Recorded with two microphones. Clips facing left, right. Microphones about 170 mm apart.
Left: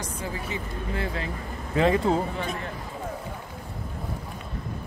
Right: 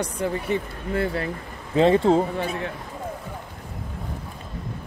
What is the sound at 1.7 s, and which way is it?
Speech, 30° right (ahead or behind).